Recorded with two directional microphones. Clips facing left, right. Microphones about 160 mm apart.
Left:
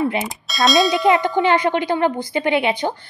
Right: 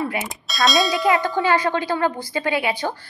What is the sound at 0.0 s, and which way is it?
Bell, 20° left (ahead or behind).